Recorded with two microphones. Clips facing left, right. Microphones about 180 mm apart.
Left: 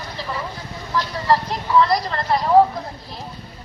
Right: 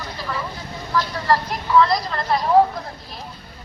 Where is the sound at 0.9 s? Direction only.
15° left (ahead or behind).